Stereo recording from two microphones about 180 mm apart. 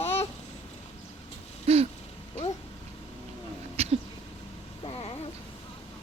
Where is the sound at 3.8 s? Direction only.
35° right (ahead or behind).